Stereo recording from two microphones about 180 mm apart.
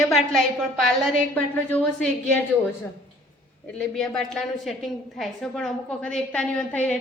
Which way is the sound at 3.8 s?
5° left (ahead or behind).